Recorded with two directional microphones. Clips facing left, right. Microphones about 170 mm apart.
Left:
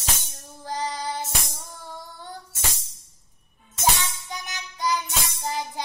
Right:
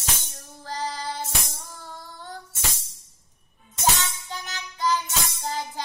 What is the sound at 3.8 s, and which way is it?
Music, 15° left (ahead or behind).